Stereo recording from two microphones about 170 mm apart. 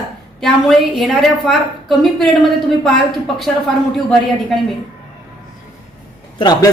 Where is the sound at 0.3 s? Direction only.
Centre (ahead or behind).